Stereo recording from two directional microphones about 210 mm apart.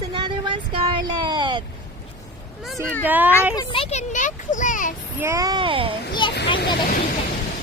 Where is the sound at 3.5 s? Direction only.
20° left (ahead or behind); by 4.9 s 40° left (ahead or behind).